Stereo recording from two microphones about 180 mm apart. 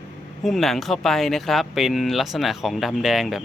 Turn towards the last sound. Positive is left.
turn(degrees=0)  # may be behind; listen again after turning